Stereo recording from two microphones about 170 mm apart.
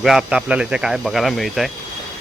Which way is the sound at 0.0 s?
Centre (ahead or behind).